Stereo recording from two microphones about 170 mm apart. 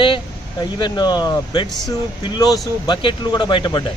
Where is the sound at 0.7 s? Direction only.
25° left (ahead or behind).